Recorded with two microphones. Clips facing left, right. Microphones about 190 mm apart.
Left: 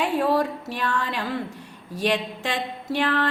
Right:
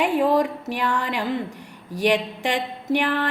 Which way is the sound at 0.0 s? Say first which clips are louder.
Right 3 dB; 15° right (ahead or behind).